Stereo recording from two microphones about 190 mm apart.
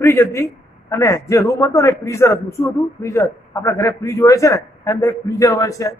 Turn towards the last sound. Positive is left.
turn(degrees=15)  # may be behind; listen again after turning